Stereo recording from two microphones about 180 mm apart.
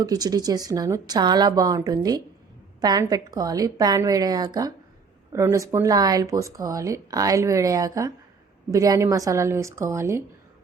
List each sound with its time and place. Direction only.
0.0 s a woman's voice: 20° right (ahead or behind)